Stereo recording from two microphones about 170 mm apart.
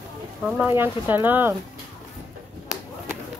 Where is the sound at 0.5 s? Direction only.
10° right (ahead or behind).